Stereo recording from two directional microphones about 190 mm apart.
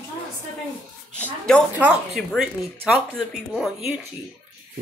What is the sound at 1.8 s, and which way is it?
Speech, 5° right (ahead or behind).